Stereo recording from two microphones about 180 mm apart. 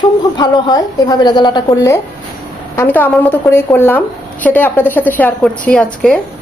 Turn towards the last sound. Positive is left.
turn(degrees=5)  # may be behind; listen again after turning